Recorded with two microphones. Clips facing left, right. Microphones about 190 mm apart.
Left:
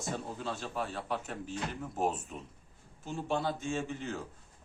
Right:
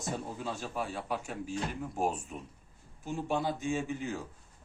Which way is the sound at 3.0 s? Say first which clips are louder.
Right 1 dB; 15° right (ahead or behind).